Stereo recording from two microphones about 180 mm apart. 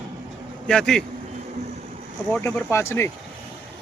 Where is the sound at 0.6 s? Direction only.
5° left (ahead or behind).